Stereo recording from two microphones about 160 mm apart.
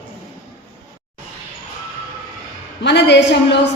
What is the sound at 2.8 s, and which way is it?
Speech, 90° left.